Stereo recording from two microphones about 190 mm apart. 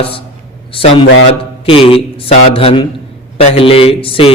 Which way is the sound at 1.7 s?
30° left (ahead or behind).